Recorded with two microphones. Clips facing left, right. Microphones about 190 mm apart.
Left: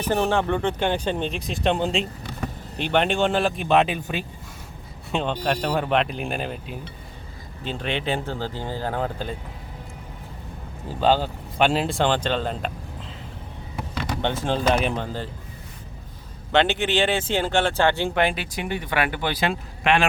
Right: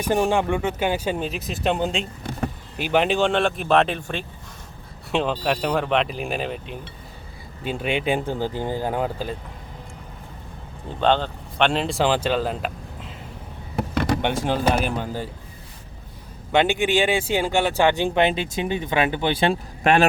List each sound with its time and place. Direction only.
0.0 s speech: 15° right (ahead or behind)
10.8 s speech: 5° left (ahead or behind)
13.7 s a sound: 55° right (ahead or behind)
14.2 s speech: 15° right (ahead or behind)
16.5 s speech: 10° right (ahead or behind)
19.8 s speech: 40° right (ahead or behind)